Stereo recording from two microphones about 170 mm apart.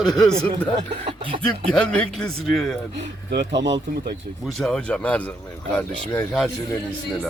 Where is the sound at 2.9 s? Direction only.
85° right.